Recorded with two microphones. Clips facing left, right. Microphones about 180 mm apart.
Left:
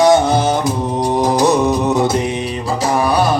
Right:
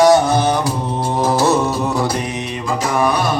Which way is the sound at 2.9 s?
35° left (ahead or behind).